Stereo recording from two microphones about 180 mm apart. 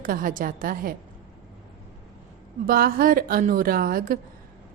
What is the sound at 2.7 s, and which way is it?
A woman's voice, 55° right (ahead or behind).